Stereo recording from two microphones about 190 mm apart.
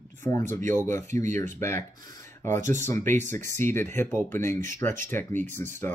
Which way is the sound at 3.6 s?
15° left (ahead or behind).